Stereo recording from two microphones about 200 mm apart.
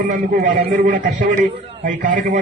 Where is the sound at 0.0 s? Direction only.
40° right (ahead or behind).